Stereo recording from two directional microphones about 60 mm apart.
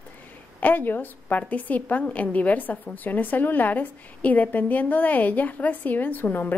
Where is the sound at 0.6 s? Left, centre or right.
Left.